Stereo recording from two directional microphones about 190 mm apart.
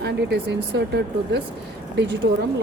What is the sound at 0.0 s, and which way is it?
A woman's voice, 60° right (ahead or behind).